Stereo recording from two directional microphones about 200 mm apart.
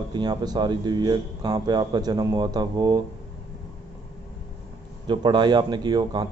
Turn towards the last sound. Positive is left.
turn(degrees=-20)  # may be behind; listen again after turning